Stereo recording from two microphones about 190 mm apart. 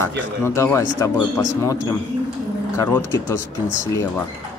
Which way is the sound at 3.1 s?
15° left (ahead or behind).